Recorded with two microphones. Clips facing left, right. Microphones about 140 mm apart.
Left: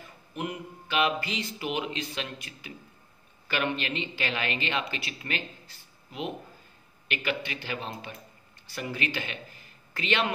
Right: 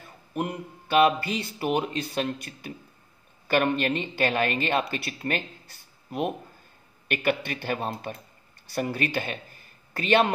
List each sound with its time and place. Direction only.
0.3 s speech: 45° right (ahead or behind)